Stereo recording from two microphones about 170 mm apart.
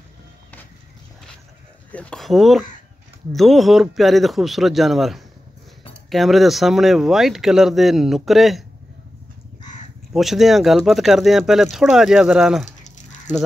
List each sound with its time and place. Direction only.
1.9 s speech: 5° left (ahead or behind)
10.1 s speech: centre (ahead or behind)
13.3 s speech: 45° left (ahead or behind)